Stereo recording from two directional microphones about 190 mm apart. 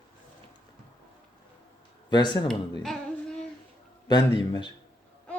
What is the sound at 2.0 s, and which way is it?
Speech, 25° left (ahead or behind).